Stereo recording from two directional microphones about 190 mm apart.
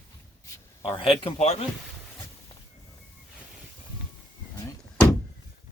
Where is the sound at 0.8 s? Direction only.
15° left (ahead or behind).